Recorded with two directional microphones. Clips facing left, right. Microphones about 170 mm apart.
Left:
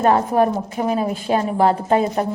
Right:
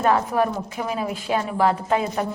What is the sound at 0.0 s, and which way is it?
Speech, 35° left (ahead or behind).